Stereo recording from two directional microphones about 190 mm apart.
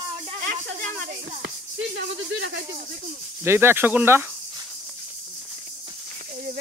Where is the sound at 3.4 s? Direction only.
10° right (ahead or behind).